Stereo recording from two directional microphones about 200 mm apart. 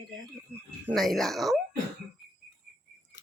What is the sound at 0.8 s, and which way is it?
Speech, centre (ahead or behind).